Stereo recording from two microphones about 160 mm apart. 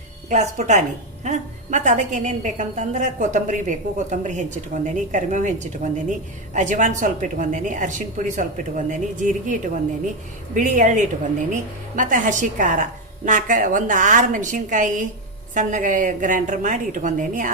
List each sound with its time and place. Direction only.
0.3 s a woman's voice: 45° right (ahead or behind)